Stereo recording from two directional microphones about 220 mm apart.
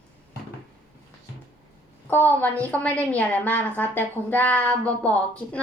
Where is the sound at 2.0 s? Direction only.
10° left (ahead or behind).